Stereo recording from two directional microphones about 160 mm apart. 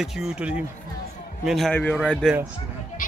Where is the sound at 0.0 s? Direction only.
5° right (ahead or behind).